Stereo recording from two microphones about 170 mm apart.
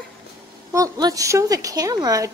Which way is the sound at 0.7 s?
20° right (ahead or behind).